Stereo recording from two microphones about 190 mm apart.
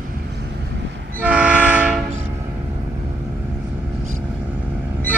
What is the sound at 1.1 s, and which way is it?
Train, 5° right (ahead or behind).